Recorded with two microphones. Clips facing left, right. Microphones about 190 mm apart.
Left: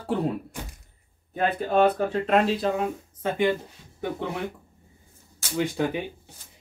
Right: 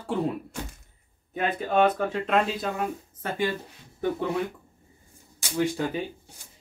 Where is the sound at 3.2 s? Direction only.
20° left (ahead or behind).